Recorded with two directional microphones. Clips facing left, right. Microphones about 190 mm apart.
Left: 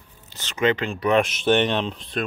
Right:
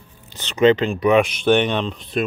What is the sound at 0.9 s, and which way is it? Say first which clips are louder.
Speech: right 5 dB; 15° right (ahead or behind).